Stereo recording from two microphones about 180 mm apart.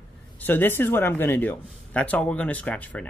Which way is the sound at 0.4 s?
10° left (ahead or behind).